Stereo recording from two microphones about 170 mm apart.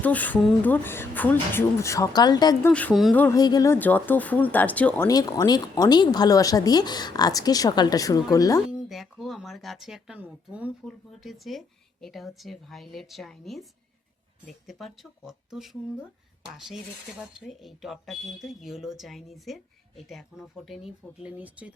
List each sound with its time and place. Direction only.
0.0 s speech: 10° left (ahead or behind)
2.7 s speech: 5° left (ahead or behind)
3.2 s speech: 20° left (ahead or behind)
5.0 s speech: 20° left (ahead or behind)
8.7 s speech: centre (ahead or behind)